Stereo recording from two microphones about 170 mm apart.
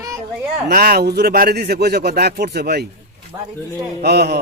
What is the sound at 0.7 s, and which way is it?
A man's voice, 60° right (ahead or behind).